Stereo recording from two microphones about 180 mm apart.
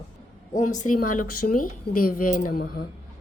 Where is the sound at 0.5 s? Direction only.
45° left (ahead or behind).